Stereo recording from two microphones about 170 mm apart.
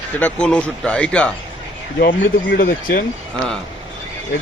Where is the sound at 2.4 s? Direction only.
65° left (ahead or behind).